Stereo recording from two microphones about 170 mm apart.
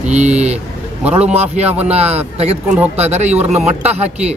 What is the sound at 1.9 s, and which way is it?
Speech, 40° right (ahead or behind).